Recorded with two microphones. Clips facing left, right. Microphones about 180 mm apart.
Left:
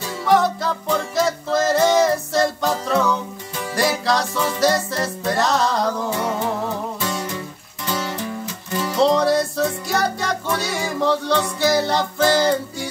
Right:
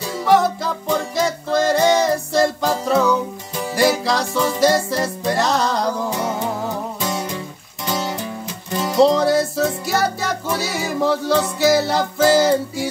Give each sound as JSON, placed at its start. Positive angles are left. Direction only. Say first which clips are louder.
{"t": 0.2, "sound": "music", "louder": "right 1 dB", "side_deg": 0}
{"t": 7.0, "sound": "music", "louder": "right 1 dB", "side_deg": -20}
{"t": 9.0, "sound": "music", "louder": "right 2 dB", "side_deg": 0}